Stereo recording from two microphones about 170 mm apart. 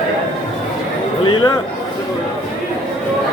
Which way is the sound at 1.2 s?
30° left (ahead or behind).